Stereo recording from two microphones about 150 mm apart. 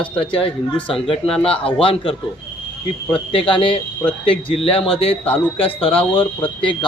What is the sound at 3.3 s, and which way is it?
Speech, 35° left (ahead or behind).